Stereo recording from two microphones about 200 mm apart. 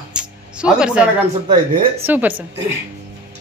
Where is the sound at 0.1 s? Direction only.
5° right (ahead or behind).